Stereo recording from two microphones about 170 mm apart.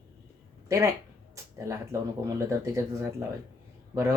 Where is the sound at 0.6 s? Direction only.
15° right (ahead or behind).